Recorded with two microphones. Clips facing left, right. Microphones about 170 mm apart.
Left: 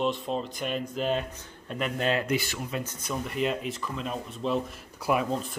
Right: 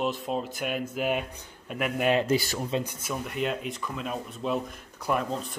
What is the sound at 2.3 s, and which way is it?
Speech, 35° right (ahead or behind).